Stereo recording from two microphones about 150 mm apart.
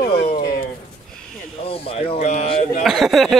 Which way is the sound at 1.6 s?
40° left (ahead or behind).